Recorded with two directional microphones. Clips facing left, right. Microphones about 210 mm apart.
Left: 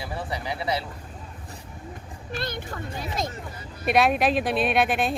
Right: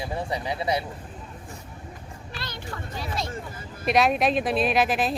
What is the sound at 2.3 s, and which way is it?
Vehicle, 50° left (ahead or behind).